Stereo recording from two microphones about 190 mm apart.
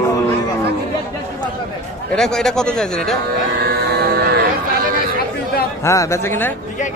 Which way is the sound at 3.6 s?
55° right (ahead or behind).